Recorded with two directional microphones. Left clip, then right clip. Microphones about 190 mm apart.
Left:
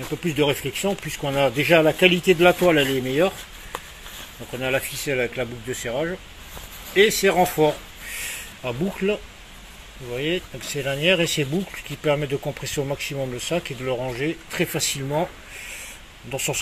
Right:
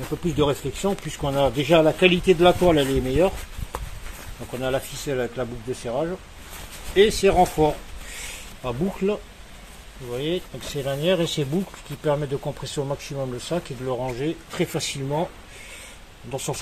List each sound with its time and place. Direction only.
0.2 s speech: centre (ahead or behind)
2.6 s chopping: 5° right (ahead or behind)
4.5 s speech: 5° right (ahead or behind)
8.3 s a sound: centre (ahead or behind)
10.1 s speech: centre (ahead or behind)
12.1 s speech: 10° left (ahead or behind)
16.3 s speech: centre (ahead or behind)